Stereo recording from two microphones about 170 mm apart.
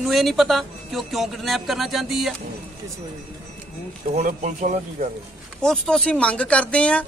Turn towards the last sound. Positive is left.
turn(degrees=5)  # may be behind; listen again after turning